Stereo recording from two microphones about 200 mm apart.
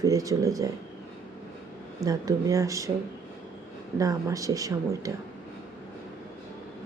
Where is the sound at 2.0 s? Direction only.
15° right (ahead or behind).